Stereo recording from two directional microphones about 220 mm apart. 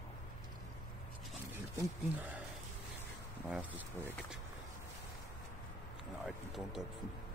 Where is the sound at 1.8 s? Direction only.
5° right (ahead or behind).